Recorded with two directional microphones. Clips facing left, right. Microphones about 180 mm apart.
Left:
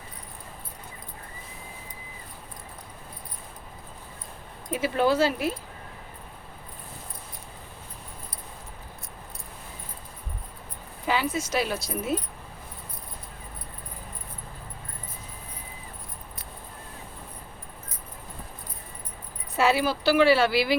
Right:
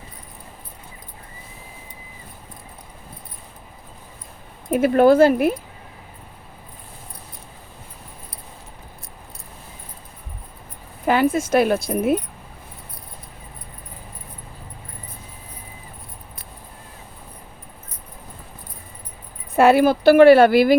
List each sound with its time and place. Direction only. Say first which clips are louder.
4.7 s speech: right 10 dB; 55° right (ahead or behind)
11.0 s speech: right 9 dB; 55° right (ahead or behind)
19.5 s speech: right 9 dB; 55° right (ahead or behind)